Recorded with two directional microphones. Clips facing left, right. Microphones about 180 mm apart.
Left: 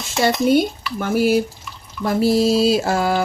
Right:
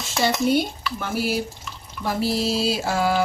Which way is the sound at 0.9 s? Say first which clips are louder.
Left 8 dB; 50° left (ahead or behind).